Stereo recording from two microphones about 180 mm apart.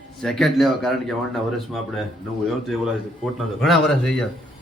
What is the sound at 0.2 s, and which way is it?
A man's voice, centre (ahead or behind).